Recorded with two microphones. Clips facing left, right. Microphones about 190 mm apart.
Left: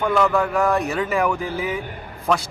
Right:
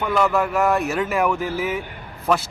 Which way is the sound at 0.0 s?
Centre (ahead or behind).